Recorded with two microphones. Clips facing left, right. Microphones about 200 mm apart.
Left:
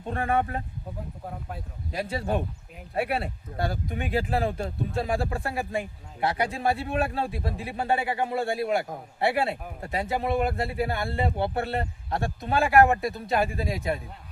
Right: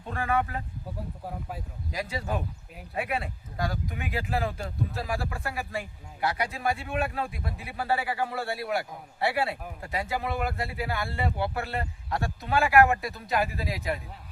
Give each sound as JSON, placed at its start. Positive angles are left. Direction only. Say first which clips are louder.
{"t": 0.0, "sound": "speech", "louder": "left 2 dB", "side_deg": 30}
{"t": 1.3, "sound": "speech", "louder": "even", "side_deg": -5}
{"t": 1.9, "sound": "speech", "louder": "left 4 dB", "side_deg": 30}